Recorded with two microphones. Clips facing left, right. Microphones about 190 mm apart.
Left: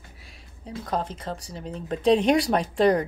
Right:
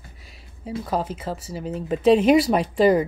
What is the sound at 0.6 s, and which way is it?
Speech, 5° right (ahead or behind).